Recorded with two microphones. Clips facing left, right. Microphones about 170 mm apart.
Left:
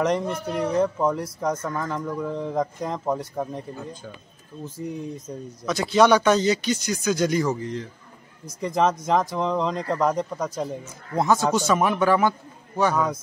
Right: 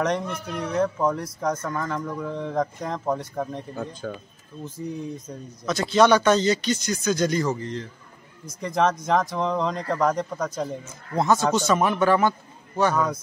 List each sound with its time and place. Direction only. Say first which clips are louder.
0.0 s speech: left 2 dB; centre (ahead or behind)
4.0 s speech: right 8 dB; 70° right (ahead or behind)
5.7 s speech: even; 15° left (ahead or behind)